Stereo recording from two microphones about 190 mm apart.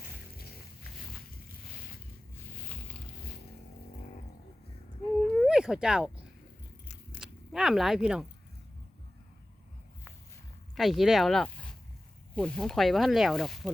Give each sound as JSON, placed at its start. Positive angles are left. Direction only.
{"t": 5.4, "sound": "howl", "side_deg": -5}
{"t": 7.2, "sound": "a sound", "side_deg": 0}
{"t": 10.8, "sound": "speech", "side_deg": 0}